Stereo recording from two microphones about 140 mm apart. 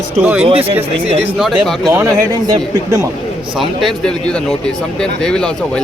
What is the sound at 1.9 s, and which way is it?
A man's voice, 25° right (ahead or behind).